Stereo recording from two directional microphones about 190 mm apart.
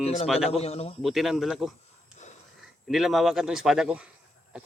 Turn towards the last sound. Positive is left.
turn(degrees=-5)  # may be behind; listen again after turning